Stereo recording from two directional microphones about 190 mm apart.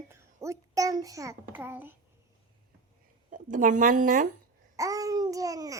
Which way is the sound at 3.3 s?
45° right (ahead or behind).